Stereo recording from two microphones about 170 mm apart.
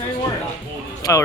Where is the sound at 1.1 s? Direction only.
15° left (ahead or behind).